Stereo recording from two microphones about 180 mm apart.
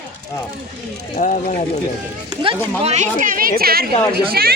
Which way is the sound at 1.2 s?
45° left (ahead or behind).